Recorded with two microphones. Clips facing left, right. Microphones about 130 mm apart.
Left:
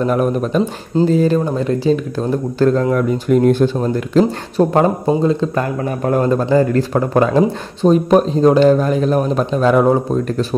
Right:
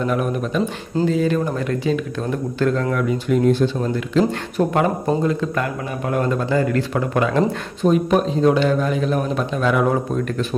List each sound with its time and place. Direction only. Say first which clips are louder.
0.0 s a man's voice: left 5 dB; 40° left (ahead or behind)
3.8 s a man's voice: left 4 dB; 40° left (ahead or behind)